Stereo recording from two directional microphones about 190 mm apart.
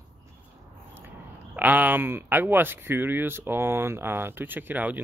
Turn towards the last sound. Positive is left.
turn(degrees=-10)  # may be behind; listen again after turning